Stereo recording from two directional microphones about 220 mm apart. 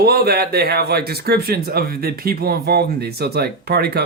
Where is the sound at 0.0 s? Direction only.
45° right (ahead or behind).